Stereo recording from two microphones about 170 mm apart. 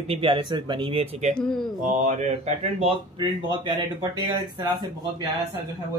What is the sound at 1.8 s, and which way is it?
Speech, 50° right (ahead or behind).